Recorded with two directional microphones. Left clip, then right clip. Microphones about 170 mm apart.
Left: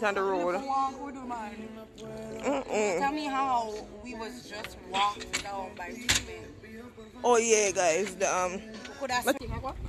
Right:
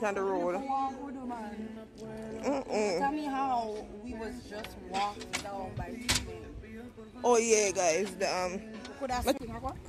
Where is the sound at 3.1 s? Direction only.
65° right (ahead or behind).